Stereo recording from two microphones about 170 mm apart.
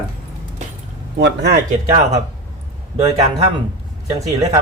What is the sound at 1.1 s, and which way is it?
Speech, 85° right.